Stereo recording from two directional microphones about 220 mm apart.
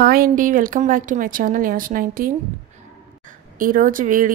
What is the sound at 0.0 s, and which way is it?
A woman's voice, 40° right (ahead or behind).